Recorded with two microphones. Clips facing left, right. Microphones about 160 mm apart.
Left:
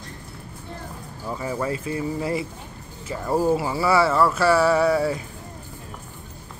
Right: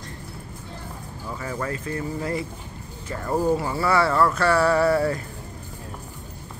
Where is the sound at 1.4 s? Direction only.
15° left (ahead or behind).